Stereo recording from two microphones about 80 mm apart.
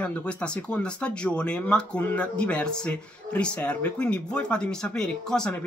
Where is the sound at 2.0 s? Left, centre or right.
Left.